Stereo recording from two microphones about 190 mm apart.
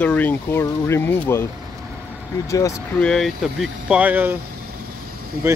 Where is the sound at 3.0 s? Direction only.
Centre (ahead or behind).